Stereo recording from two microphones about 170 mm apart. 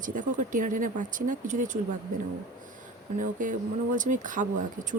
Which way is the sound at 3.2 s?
50° right (ahead or behind).